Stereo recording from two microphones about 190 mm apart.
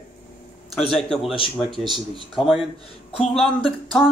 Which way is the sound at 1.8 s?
25° right (ahead or behind).